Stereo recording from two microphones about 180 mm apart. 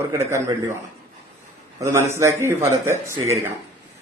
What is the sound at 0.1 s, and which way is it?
Speech, 15° right (ahead or behind).